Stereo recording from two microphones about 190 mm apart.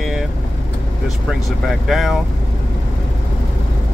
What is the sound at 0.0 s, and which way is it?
Vehicle, centre (ahead or behind).